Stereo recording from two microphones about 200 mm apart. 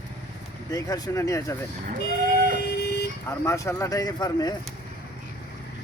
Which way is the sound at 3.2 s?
15° left (ahead or behind).